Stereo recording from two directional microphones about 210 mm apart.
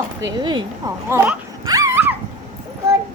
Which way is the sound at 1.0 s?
10° right (ahead or behind).